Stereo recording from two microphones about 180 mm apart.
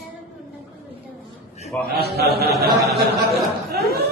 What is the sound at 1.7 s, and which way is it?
Speech, 10° left (ahead or behind).